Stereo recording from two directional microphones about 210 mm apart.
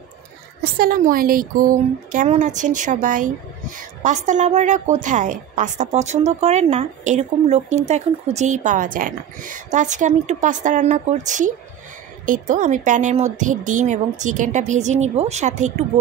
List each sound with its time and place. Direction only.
0.7 s speech: 40° right (ahead or behind)